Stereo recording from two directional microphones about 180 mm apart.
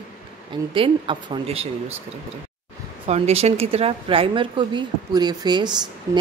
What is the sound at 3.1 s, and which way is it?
A woman's voice, 35° right (ahead or behind).